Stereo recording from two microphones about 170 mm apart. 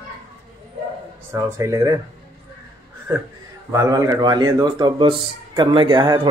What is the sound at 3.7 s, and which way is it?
A man's voice, 20° right (ahead or behind).